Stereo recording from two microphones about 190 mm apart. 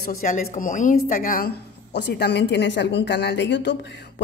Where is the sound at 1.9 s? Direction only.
60° left (ahead or behind).